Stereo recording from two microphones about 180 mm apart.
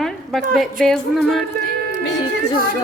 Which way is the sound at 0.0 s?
Centre (ahead or behind).